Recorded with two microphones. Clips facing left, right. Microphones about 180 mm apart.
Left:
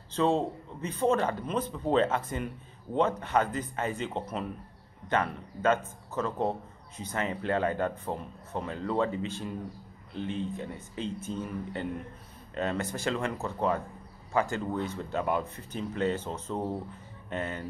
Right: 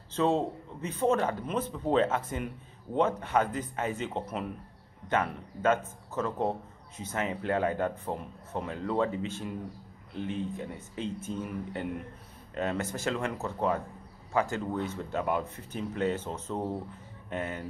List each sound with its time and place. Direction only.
0.1 s a man's voice: 5° right (ahead or behind)